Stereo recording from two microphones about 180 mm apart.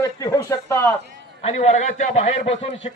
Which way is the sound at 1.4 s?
35° left (ahead or behind).